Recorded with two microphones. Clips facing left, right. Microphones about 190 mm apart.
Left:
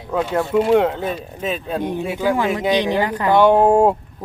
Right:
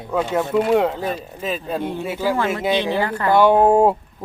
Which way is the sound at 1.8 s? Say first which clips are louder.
Left 2 dB; 15° left (ahead or behind).